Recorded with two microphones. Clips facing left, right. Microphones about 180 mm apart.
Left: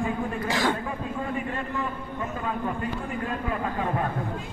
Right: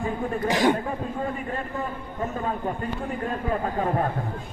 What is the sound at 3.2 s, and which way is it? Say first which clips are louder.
Speech: right 3 dB; 40° right (ahead or behind).